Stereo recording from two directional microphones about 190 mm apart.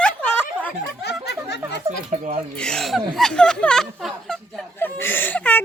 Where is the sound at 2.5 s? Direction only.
5° left (ahead or behind).